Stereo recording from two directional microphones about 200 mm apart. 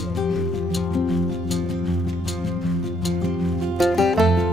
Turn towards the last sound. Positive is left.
turn(degrees=0)  # may be behind; listen again after turning